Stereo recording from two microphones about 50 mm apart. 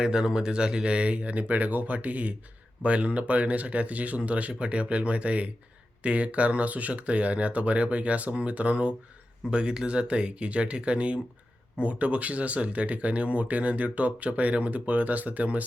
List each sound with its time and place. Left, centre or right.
0.0 s speech: centre; by 15.6 s right